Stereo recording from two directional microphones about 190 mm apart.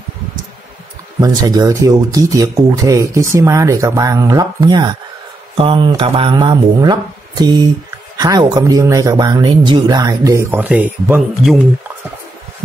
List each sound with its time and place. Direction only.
1.2 s speech: 20° right (ahead or behind)